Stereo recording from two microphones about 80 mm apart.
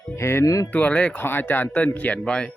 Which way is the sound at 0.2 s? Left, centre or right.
Left.